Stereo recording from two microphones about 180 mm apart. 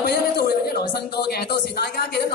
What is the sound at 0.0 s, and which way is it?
A man's voice, 65° left (ahead or behind).